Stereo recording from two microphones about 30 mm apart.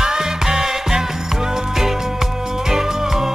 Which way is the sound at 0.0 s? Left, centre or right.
Centre.